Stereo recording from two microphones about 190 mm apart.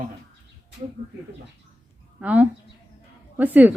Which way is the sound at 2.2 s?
5° right (ahead or behind).